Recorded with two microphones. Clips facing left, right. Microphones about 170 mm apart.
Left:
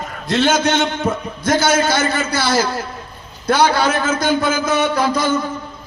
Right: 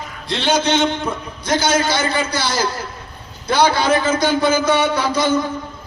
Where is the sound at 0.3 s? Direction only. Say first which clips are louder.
Left 2 dB; 45° left (ahead or behind).